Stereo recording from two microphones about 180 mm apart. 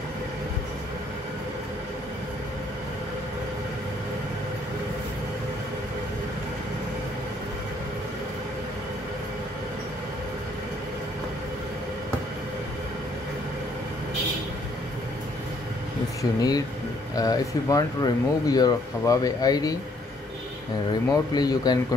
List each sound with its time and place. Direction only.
16.2 s speech: 20° left (ahead or behind)
21.1 s speech: 20° left (ahead or behind)